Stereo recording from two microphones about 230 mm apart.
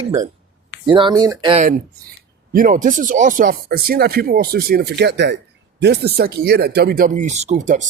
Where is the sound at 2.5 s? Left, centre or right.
Right.